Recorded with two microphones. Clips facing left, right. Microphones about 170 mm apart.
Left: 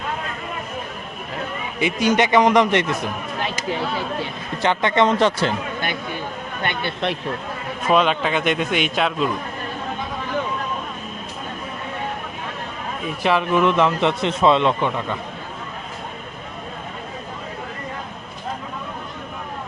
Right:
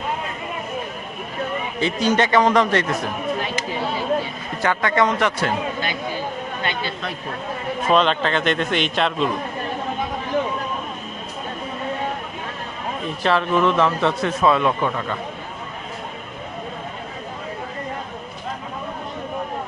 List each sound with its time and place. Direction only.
1.8 s a man's voice: 15° left (ahead or behind)
4.6 s speech: 25° left (ahead or behind)
6.7 s speech: 65° left (ahead or behind)
7.9 s a man's voice: 10° left (ahead or behind)
13.1 s a man's voice: 15° left (ahead or behind)